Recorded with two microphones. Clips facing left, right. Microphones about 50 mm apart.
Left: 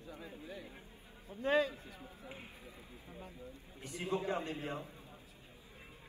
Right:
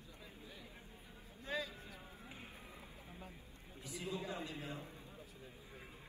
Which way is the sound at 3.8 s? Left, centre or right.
Left.